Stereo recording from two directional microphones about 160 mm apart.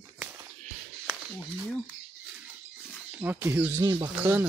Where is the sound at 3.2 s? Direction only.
15° right (ahead or behind).